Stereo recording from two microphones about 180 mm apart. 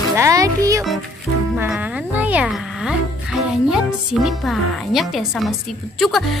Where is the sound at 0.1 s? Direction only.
15° right (ahead or behind).